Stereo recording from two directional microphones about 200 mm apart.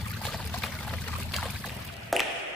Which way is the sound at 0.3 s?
Centre (ahead or behind).